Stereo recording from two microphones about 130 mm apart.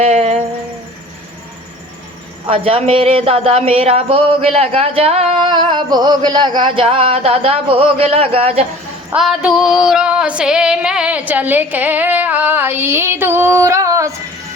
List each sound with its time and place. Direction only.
0.0 s a sound: 55° right (ahead or behind)
2.5 s speech: 45° right (ahead or behind)
9.1 s female singing: 5° right (ahead or behind); by 14.2 s 25° right (ahead or behind)